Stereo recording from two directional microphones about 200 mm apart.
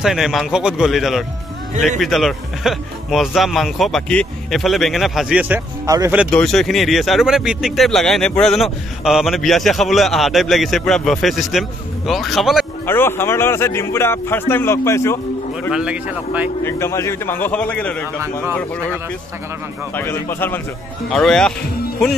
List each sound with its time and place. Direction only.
0.0 s speech: centre (ahead or behind)
6.3 s speech: centre (ahead or behind)
12.8 s speech: 10° left (ahead or behind)
15.7 s speech: 5° right (ahead or behind)
16.6 s speech: 15° left (ahead or behind)
19.9 s speech: 10° left (ahead or behind)